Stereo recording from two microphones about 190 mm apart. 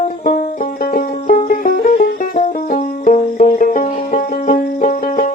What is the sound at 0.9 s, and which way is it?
Music, 45° left (ahead or behind).